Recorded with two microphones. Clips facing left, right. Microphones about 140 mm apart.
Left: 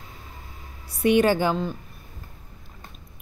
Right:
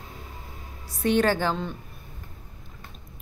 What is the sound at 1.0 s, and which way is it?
Speech, 10° left (ahead or behind).